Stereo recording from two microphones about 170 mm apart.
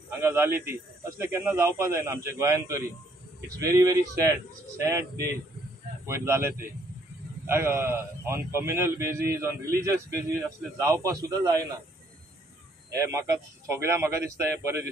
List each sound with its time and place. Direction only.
0.2 s a man's voice: 15° right (ahead or behind)
12.9 s a man's voice: 15° right (ahead or behind)